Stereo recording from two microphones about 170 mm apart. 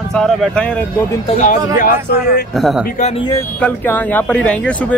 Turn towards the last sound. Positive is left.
turn(degrees=5)  # may be behind; listen again after turning